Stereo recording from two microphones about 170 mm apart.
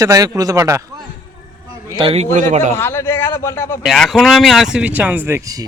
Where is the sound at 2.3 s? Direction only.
45° right (ahead or behind).